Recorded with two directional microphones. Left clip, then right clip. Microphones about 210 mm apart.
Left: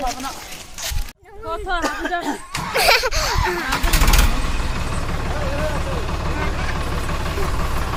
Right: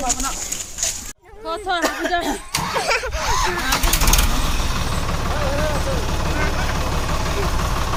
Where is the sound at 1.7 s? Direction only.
40° right (ahead or behind).